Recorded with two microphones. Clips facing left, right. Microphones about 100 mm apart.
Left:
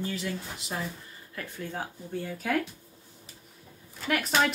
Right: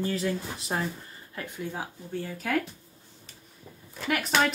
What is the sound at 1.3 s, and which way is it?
Speech, 15° right (ahead or behind).